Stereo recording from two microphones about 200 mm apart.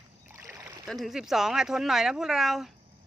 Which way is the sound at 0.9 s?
Centre (ahead or behind).